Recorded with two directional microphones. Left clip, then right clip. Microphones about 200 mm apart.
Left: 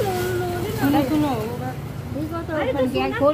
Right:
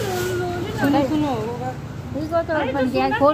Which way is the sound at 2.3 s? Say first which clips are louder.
Right 4 dB; 40° right (ahead or behind).